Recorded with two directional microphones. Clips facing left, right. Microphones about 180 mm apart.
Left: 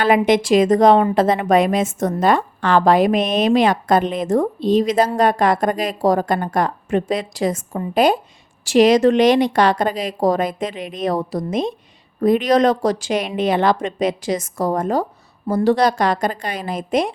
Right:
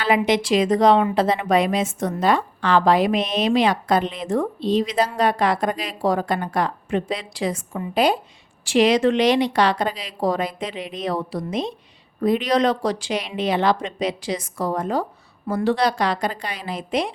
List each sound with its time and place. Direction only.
0.0 s a woman's voice: 50° left (ahead or behind)